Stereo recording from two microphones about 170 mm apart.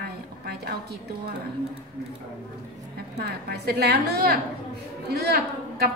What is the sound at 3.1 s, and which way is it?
A woman's voice, 70° right (ahead or behind).